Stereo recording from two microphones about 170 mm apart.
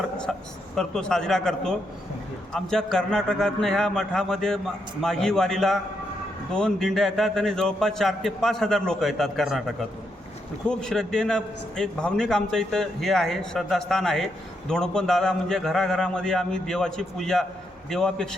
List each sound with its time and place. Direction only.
0.3 s a man's voice: centre (ahead or behind)